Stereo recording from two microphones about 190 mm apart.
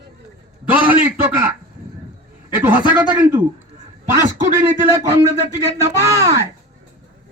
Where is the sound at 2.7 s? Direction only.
25° left (ahead or behind).